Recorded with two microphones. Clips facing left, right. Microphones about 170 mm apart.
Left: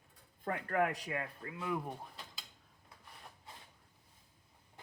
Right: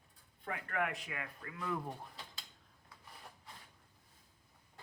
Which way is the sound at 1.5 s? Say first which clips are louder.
Left 1 dB; 15° left (ahead or behind).